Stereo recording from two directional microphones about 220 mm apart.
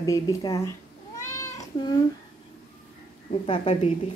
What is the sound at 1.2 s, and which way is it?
Cat, 15° left (ahead or behind).